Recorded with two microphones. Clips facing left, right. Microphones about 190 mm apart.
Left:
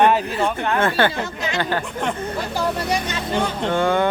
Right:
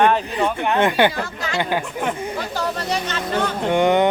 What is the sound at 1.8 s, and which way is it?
Speech, 5° right (ahead or behind).